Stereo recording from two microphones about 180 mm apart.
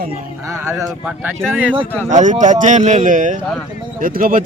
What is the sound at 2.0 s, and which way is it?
Speech, 45° right (ahead or behind).